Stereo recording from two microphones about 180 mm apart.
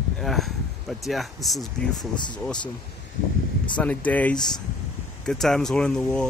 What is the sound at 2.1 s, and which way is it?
Speech, 25° left (ahead or behind).